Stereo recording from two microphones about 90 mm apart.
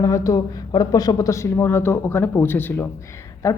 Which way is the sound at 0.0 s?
35° left (ahead or behind).